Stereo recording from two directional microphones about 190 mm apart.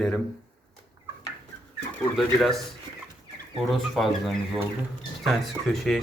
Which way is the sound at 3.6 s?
Centre (ahead or behind).